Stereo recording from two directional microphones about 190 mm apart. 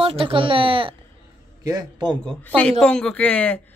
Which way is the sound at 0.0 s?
30° right (ahead or behind).